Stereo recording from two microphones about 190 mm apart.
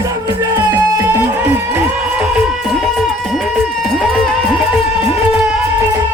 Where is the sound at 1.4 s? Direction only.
10° right (ahead or behind).